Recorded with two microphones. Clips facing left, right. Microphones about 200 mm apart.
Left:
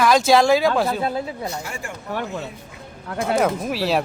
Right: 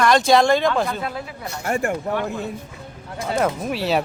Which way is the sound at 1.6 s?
55° right (ahead or behind).